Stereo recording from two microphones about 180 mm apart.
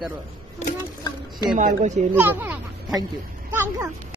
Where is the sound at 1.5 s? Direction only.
40° right (ahead or behind).